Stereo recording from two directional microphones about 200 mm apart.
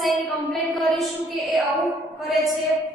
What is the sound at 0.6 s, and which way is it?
A woman's voice, centre (ahead or behind).